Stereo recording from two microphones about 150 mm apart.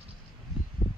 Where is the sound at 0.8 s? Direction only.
15° left (ahead or behind).